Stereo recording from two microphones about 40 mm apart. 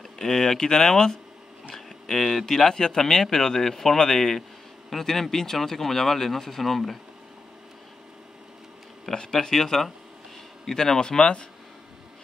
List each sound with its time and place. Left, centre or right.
0.2 s speech: centre
9.1 s speech: centre